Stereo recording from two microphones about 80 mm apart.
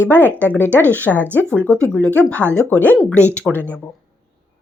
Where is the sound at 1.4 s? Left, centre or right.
Centre.